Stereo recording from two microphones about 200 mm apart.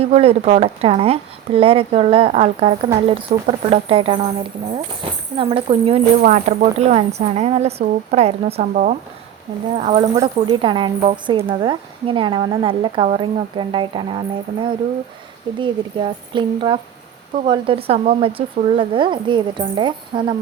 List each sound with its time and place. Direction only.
0.0 s speech: 30° right (ahead or behind)
5.0 s a sound: 30° right (ahead or behind)
5.4 s speech: 25° right (ahead or behind)
6.2 s a woman's voice: 40° right (ahead or behind)
9.7 s speech: 30° right (ahead or behind)